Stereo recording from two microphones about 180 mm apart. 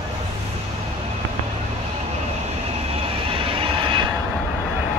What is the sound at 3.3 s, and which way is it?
Vehicle, 30° right (ahead or behind).